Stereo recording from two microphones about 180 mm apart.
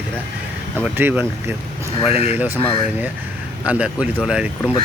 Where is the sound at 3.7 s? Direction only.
5° right (ahead or behind).